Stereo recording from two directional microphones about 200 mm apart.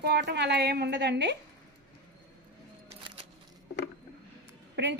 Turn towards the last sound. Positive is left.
turn(degrees=-60)  # may be behind; listen again after turning